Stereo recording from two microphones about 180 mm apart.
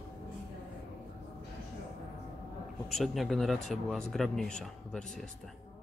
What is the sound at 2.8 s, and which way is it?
Speech, centre (ahead or behind).